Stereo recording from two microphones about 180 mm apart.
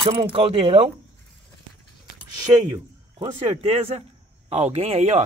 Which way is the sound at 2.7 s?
25° right (ahead or behind).